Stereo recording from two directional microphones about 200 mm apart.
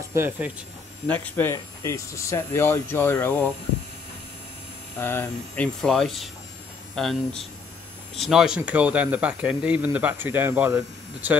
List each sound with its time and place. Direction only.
0.1 s speech: 10° right (ahead or behind)
1.0 s speech: 10° left (ahead or behind)
4.9 s speech: 10° left (ahead or behind); by 11.3 s 10° right (ahead or behind)